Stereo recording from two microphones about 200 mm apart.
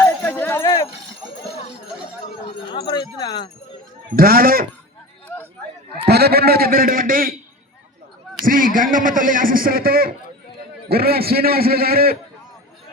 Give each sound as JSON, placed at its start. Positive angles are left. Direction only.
{"t": 0.0, "sound": "jingle bell", "side_deg": 5}
{"t": 2.9, "sound": "speech", "side_deg": 20}
{"t": 4.1, "sound": "a man's voice", "side_deg": -50}
{"t": 6.1, "sound": "a man's voice", "side_deg": -50}
{"t": 8.4, "sound": "a man's voice", "side_deg": -45}